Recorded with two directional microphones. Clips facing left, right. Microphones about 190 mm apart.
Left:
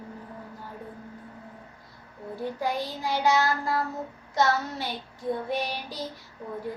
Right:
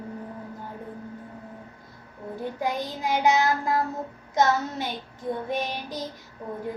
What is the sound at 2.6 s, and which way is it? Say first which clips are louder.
Child singing: right 2 dB; 20° right (ahead or behind).